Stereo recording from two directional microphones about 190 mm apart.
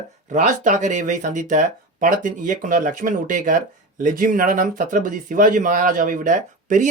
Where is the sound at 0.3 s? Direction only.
40° right (ahead or behind).